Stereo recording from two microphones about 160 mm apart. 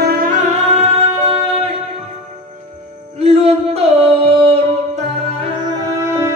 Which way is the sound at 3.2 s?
40° right (ahead or behind).